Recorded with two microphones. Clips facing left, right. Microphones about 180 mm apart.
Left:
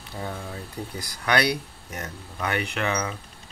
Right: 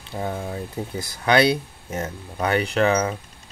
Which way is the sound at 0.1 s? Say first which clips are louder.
Right 6 dB; 30° right (ahead or behind).